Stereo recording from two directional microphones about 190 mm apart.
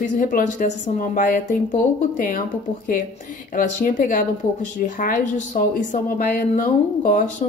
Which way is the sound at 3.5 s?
45° left (ahead or behind).